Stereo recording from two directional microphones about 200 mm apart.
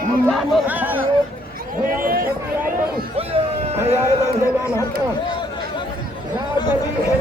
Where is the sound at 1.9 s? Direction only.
45° right (ahead or behind).